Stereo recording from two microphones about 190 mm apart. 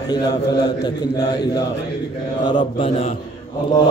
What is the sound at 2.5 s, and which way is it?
Speech, 25° left (ahead or behind).